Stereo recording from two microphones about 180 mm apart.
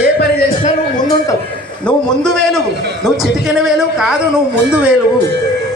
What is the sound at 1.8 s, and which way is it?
Speech, 5° left (ahead or behind).